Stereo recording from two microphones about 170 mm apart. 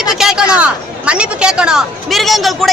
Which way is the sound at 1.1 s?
5° right (ahead or behind).